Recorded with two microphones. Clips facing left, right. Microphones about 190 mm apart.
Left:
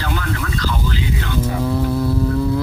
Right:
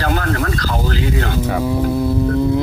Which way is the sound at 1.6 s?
15° right (ahead or behind).